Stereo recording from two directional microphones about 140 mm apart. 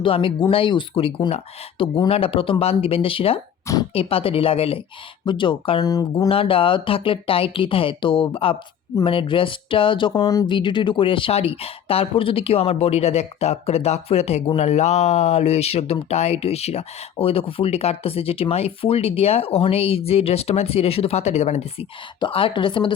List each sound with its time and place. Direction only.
0.0 s speech: 40° left (ahead or behind)
5.8 s speech: 25° left (ahead or behind)
6.2 s speech: 40° left (ahead or behind)
22.2 s speech: 40° left (ahead or behind)